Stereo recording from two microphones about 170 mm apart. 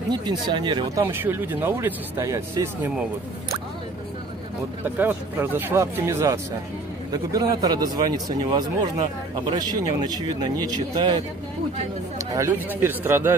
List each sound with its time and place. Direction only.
0.1 s speech: 25° right (ahead or behind)
1.0 s speech: 10° right (ahead or behind)
4.8 s speech: 10° right (ahead or behind)
12.3 s speech: 15° right (ahead or behind)